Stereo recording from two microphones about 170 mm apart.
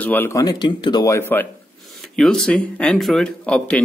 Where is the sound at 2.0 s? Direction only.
5° left (ahead or behind).